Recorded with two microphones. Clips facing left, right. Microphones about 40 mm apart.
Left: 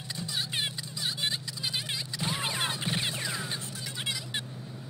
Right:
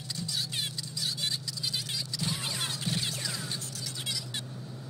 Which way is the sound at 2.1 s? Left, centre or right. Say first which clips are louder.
Left 3 dB; left.